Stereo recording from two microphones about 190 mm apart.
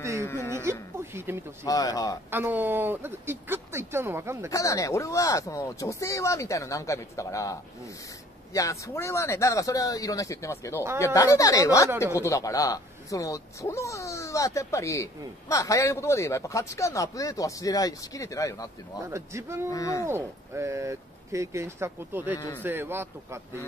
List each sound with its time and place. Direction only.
0.2 s speech: 15° left (ahead or behind)
0.7 s speech: 15° right (ahead or behind)
1.7 s speech: 20° left (ahead or behind)
2.3 s speech: 10° right (ahead or behind)
4.5 s speech: 15° left (ahead or behind)
8.5 s speech: 15° left (ahead or behind)
19.0 s speech: 15° right (ahead or behind)
19.7 s speech: 15° left (ahead or behind)
20.1 s speech: 15° right (ahead or behind)